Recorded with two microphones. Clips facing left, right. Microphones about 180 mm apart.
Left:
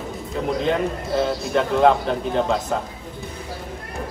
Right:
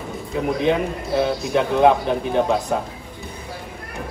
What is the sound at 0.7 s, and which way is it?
A man's voice, 5° right (ahead or behind).